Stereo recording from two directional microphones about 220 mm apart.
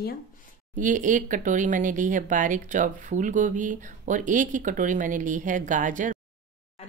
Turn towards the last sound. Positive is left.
turn(degrees=-35)  # may be behind; listen again after turning